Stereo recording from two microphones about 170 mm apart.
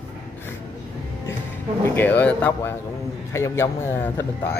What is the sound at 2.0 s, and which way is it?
A man's voice, 10° left (ahead or behind).